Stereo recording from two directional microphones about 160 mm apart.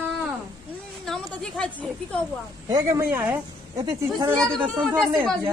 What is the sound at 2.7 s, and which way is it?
Speech, 20° right (ahead or behind).